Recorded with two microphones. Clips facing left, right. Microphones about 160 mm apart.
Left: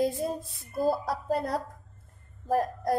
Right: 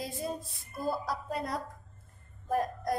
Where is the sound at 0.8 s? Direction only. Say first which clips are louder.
Left 8 dB; 35° left (ahead or behind).